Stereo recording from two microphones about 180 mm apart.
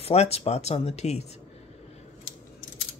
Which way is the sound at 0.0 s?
35° left (ahead or behind).